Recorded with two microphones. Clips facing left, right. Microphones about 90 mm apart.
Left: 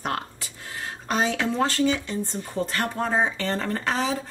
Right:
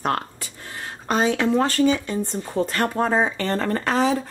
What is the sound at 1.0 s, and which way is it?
Speech, 50° right (ahead or behind).